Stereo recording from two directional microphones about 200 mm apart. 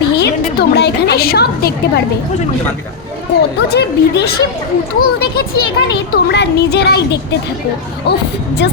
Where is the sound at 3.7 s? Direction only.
55° left (ahead or behind).